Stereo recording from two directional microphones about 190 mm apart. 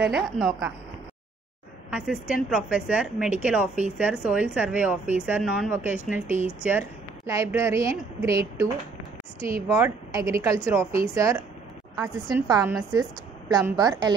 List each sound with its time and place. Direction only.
0.0 s a woman's voice: centre (ahead or behind)
1.9 s a woman's voice: 5° right (ahead or behind)
9.8 s a woman's voice: 15° right (ahead or behind)